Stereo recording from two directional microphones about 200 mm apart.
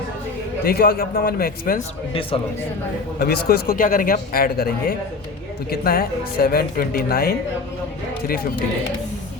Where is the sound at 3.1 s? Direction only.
50° left (ahead or behind).